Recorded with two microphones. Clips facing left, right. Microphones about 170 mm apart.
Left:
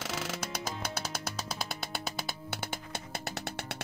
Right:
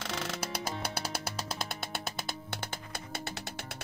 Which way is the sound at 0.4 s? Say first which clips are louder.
Right 1 dB; 30° right (ahead or behind).